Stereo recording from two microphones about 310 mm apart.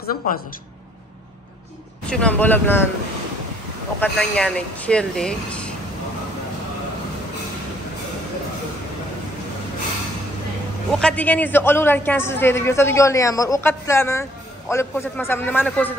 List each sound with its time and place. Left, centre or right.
0.0 s speech: left
2.0 s speech: centre
4.0 s speech: centre
10.9 s a man's voice: centre